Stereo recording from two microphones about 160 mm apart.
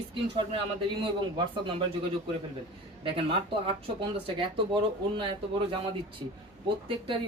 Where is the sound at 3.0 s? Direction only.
35° right (ahead or behind).